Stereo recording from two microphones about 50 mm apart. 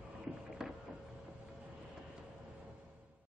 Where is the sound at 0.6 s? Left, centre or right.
Centre.